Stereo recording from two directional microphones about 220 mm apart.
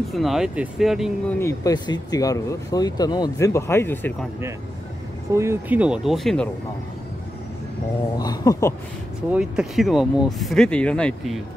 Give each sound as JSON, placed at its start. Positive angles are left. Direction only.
{"t": 0.1, "sound": "speech", "side_deg": 0}
{"t": 1.4, "sound": "speech", "side_deg": 15}
{"t": 5.3, "sound": "speech", "side_deg": -10}
{"t": 8.2, "sound": "speech", "side_deg": 15}
{"t": 9.3, "sound": "speech", "side_deg": -5}